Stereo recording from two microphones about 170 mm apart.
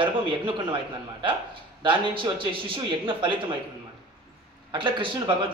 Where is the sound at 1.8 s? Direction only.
30° right (ahead or behind).